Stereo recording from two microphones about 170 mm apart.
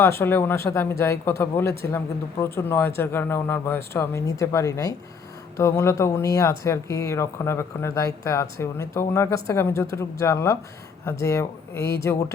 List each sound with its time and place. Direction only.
0.0 s speech: 15° left (ahead or behind)